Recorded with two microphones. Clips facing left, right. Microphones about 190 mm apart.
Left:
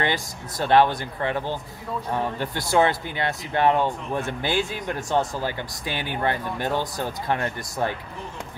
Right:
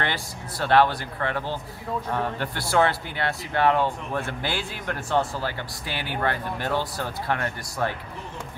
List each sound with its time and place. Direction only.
0.0 s speech: 15° left (ahead or behind)